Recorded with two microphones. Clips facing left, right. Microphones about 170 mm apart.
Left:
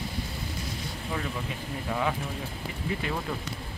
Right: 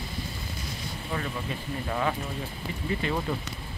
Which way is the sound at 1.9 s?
5° left (ahead or behind).